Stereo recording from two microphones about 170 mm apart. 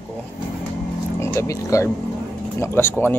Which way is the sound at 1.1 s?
15° left (ahead or behind).